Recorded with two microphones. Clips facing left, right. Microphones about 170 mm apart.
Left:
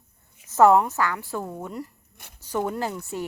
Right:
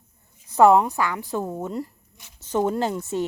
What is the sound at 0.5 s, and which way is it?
Speech, 15° right (ahead or behind).